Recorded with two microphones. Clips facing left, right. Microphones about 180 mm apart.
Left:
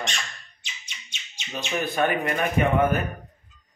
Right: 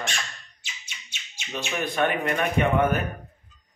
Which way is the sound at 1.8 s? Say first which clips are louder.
Even; centre (ahead or behind).